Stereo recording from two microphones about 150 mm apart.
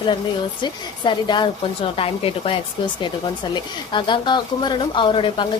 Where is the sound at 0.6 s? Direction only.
30° left (ahead or behind).